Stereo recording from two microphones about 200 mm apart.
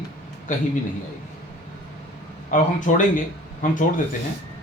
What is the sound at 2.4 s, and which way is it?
Speech, 40° left (ahead or behind).